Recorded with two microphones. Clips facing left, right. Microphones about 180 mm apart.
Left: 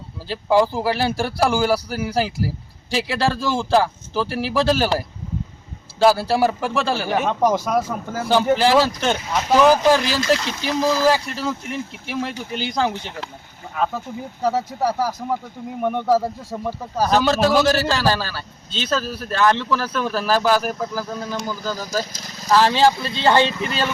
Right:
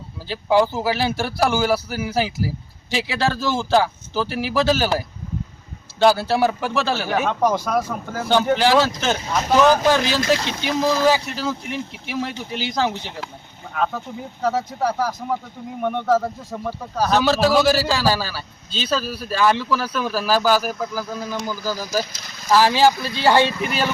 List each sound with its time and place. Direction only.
0.3 s speech: centre (ahead or behind)
13.7 s speech: 5° left (ahead or behind)
17.1 s a man's voice: 5° right (ahead or behind)
22.2 s vehicle: 40° left (ahead or behind)
22.5 s speech: 5° right (ahead or behind)
22.9 s speech: 25° left (ahead or behind)
23.2 s a man's voice: 10° right (ahead or behind)